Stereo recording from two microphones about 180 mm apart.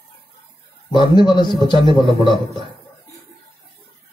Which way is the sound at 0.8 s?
25° left (ahead or behind).